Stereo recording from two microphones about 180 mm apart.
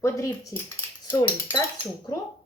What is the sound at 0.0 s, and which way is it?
Speech, 15° left (ahead or behind).